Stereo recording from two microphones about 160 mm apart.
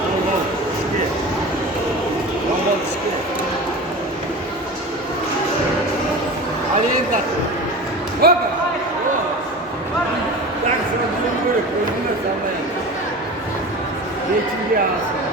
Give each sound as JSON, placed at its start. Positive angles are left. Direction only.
{"t": 8.2, "sound": "basketball bounce", "side_deg": -75}